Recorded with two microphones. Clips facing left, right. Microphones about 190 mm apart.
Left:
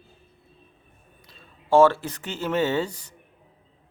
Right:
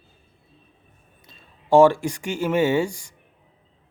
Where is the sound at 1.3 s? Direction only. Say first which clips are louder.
Right 3 dB; 15° right (ahead or behind).